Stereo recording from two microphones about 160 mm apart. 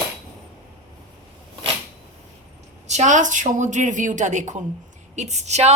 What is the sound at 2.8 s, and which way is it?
A woman's voice, 45° right (ahead or behind).